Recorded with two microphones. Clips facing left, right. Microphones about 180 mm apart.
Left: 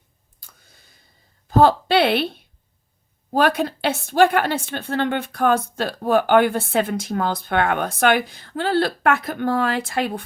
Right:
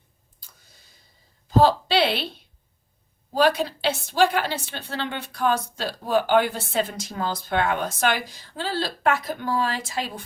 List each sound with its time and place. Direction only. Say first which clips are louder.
1.5 s a woman's voice: left 3 dB; 55° left (ahead or behind)